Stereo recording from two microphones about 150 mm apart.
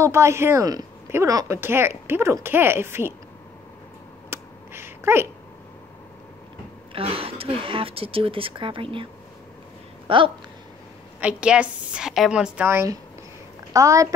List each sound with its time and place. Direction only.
0.0 s speech: 20° right (ahead or behind)
4.3 s a sound: 15° right (ahead or behind)
6.9 s speech: 40° right (ahead or behind)
10.0 s speech: 35° right (ahead or behind)
11.1 s speech: 5° right (ahead or behind)
12.6 s speech: 20° right (ahead or behind)